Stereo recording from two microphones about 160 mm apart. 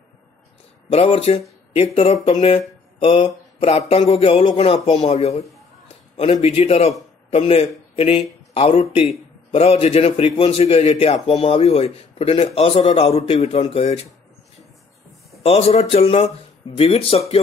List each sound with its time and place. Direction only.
0.8 s a man's voice: 35° left (ahead or behind)
15.4 s a man's voice: 40° left (ahead or behind)